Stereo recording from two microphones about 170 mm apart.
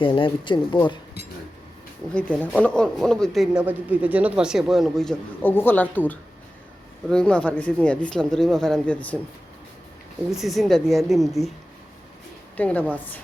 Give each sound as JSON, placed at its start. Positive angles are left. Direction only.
{"t": 0.0, "sound": "speech", "side_deg": 30}
{"t": 2.1, "sound": "speech", "side_deg": 5}
{"t": 7.1, "sound": "speech", "side_deg": 5}
{"t": 10.4, "sound": "speech", "side_deg": 0}
{"t": 12.5, "sound": "a woman's voice", "side_deg": 10}